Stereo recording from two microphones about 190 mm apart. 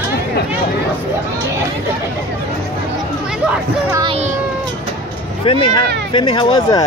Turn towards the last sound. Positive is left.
turn(degrees=25)  # may be behind; listen again after turning